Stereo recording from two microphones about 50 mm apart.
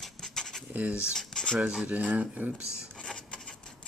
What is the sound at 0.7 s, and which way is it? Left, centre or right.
Speech, right.